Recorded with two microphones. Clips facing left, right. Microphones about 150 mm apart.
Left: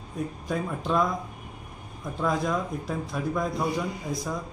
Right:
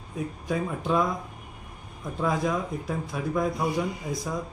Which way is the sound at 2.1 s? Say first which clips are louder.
Even; 5° right (ahead or behind).